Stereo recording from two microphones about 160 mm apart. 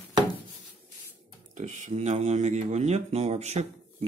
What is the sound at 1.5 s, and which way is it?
Speech, 50° right (ahead or behind).